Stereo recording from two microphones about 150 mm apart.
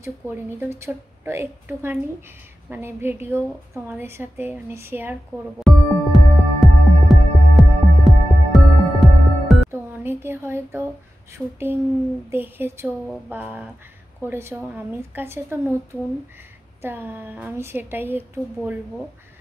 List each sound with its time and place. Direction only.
0.0 s a woman's voice: 15° right (ahead or behind)
5.6 s music: centre (ahead or behind)
9.7 s a sound: 15° right (ahead or behind)
11.3 s a woman's voice: 15° right (ahead or behind)